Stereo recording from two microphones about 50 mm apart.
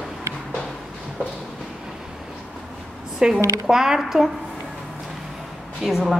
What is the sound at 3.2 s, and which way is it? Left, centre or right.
A woman's voice, centre.